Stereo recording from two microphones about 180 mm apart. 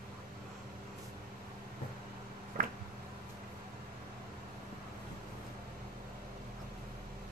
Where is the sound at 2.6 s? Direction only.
50° right (ahead or behind).